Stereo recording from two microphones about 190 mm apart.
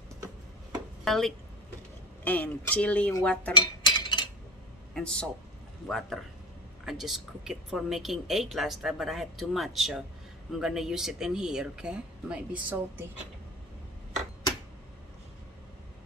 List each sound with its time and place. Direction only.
1.0 s speech: centre (ahead or behind)
3.5 s cutlery: 20° left (ahead or behind)
4.9 s a woman's voice: 5° left (ahead or behind)